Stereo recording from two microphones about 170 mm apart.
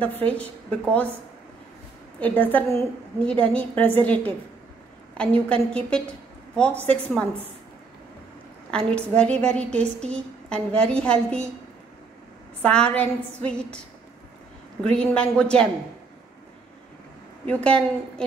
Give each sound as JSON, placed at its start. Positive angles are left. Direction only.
{"t": 0.0, "sound": "a woman's voice", "side_deg": 10}
{"t": 2.1, "sound": "a woman's voice", "side_deg": 10}
{"t": 8.6, "sound": "a woman's voice", "side_deg": 5}
{"t": 12.6, "sound": "a woman's voice", "side_deg": 5}
{"t": 14.8, "sound": "a woman's voice", "side_deg": 5}
{"t": 17.5, "sound": "a woman's voice", "side_deg": 5}